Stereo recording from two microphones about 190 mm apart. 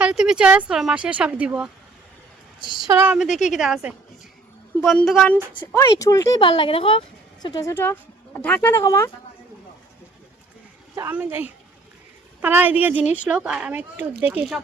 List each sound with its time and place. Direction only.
0.0 s speech: 5° right (ahead or behind)
2.6 s a sound: 25° left (ahead or behind)
2.8 s speech: 15° right (ahead or behind)
5.5 s speech: 15° left (ahead or behind)
10.9 s speech: 10° right (ahead or behind)